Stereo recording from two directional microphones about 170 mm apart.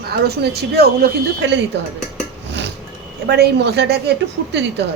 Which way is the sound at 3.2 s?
75° right (ahead or behind).